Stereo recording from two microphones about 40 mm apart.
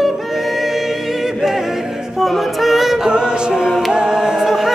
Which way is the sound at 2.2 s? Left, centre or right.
Centre.